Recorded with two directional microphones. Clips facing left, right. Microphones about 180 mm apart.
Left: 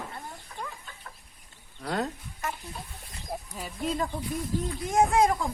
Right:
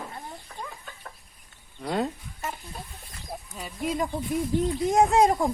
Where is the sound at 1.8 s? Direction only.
5° right (ahead or behind).